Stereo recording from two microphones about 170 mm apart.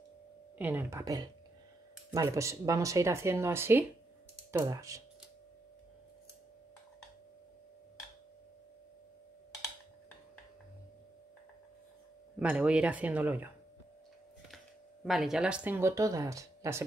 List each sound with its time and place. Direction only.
0.6 s speech: 10° right (ahead or behind)
12.4 s speech: 10° right (ahead or behind)
15.0 s speech: centre (ahead or behind); by 16.8 s 15° right (ahead or behind)